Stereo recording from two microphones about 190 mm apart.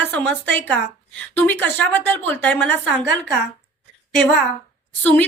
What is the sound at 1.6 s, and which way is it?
A woman's voice, 10° left (ahead or behind).